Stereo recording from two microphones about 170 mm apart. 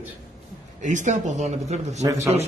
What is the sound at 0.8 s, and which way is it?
Speech, 45° right (ahead or behind).